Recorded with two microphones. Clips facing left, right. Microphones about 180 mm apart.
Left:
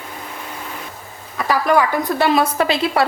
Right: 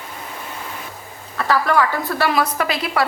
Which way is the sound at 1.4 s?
15° left (ahead or behind).